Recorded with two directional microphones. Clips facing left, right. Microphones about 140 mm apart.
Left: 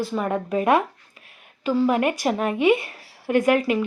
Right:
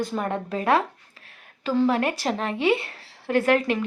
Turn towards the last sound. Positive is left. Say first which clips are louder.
# left 2 dB
turn(degrees=10)  # may be behind; listen again after turning